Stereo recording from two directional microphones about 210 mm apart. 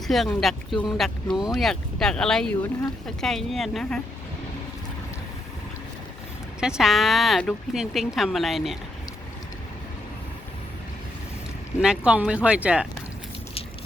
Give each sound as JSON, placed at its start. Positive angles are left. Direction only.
{"t": 0.1, "sound": "speech", "side_deg": 0}
{"t": 6.6, "sound": "speech", "side_deg": -5}
{"t": 11.8, "sound": "speech", "side_deg": -5}